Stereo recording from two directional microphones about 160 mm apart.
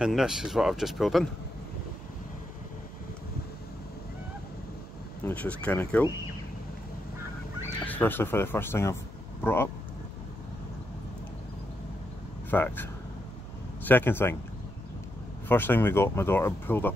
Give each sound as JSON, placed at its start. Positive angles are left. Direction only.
{"t": 0.0, "sound": "speech", "side_deg": -5}
{"t": 5.2, "sound": "speech", "side_deg": 10}
{"t": 7.8, "sound": "speech", "side_deg": 10}
{"t": 12.4, "sound": "speech", "side_deg": 10}
{"t": 13.8, "sound": "speech", "side_deg": 10}
{"t": 15.4, "sound": "speech", "side_deg": 10}